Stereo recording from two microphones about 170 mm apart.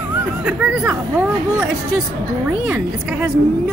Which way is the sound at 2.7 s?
5° right (ahead or behind).